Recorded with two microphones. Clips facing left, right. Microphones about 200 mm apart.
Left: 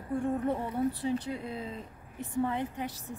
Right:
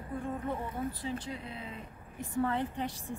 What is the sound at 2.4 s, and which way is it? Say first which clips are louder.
Speech: even; 15° left (ahead or behind).